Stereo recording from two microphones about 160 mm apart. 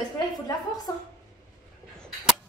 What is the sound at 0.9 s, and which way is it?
Speech, 20° left (ahead or behind).